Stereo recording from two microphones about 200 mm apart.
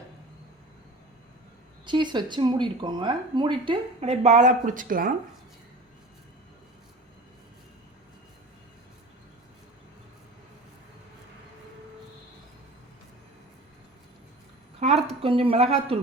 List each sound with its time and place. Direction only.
1.9 s speech: 20° right (ahead or behind); by 5.1 s 45° right (ahead or behind)
14.8 s a sound: 30° right (ahead or behind)
15.2 s speech: 30° right (ahead or behind)